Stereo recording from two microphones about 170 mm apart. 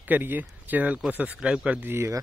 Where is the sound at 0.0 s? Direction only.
10° right (ahead or behind).